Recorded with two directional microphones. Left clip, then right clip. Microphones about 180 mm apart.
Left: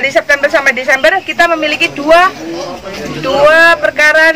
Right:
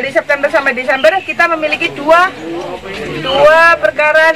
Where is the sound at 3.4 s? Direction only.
20° left (ahead or behind).